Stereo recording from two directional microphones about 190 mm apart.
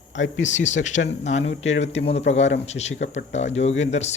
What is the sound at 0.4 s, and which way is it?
Speech, 40° left (ahead or behind).